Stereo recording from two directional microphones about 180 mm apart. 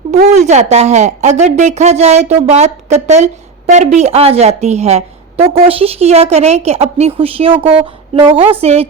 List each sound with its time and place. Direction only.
0.1 s a woman's voice: 40° right (ahead or behind)